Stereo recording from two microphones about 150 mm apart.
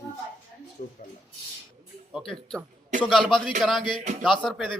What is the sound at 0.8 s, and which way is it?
Speech, 65° left (ahead or behind).